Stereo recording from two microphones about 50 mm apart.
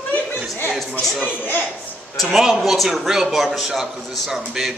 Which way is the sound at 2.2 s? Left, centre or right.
Centre.